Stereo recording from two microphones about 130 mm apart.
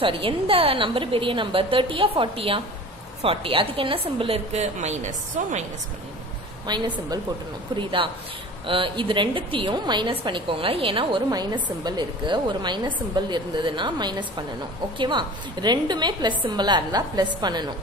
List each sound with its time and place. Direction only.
0.0 s a woman's voice: 45° right (ahead or behind); by 5.7 s 60° right (ahead or behind)
6.6 s a woman's voice: 30° right (ahead or behind)